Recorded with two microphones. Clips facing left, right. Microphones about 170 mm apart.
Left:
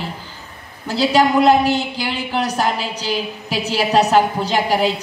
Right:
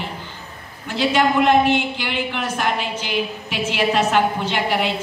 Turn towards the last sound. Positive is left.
turn(degrees=40)  # may be behind; listen again after turning